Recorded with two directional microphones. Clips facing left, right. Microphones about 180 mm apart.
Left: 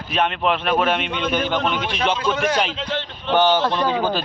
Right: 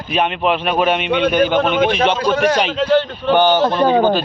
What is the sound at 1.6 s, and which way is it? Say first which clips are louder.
Speech: right 7 dB; 50° right (ahead or behind).